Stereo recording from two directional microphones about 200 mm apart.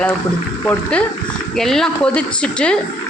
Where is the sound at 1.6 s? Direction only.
Centre (ahead or behind).